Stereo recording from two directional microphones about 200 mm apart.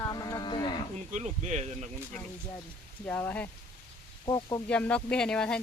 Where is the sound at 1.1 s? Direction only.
35° right (ahead or behind).